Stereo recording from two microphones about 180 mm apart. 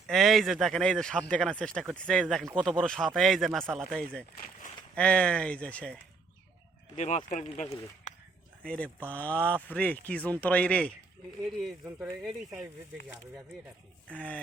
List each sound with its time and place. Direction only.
0.1 s speech: centre (ahead or behind)
4.4 s a sound: 45° left (ahead or behind)
4.9 s speech: 5° left (ahead or behind)
6.9 s speech: 40° left (ahead or behind)
8.6 s speech: 5° left (ahead or behind)
11.9 s speech: 10° right (ahead or behind)
14.1 s speech: 5° left (ahead or behind)